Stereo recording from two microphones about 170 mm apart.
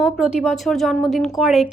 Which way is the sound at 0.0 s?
5° right (ahead or behind).